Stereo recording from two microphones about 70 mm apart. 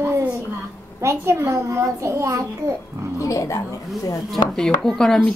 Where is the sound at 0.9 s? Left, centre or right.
Right.